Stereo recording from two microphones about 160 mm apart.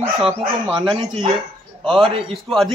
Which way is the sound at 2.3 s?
Centre (ahead or behind).